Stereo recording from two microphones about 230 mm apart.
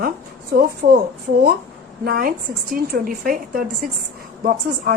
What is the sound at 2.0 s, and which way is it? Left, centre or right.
A woman's voice, right.